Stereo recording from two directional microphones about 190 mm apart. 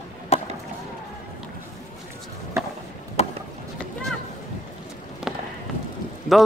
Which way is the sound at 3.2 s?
35° left (ahead or behind).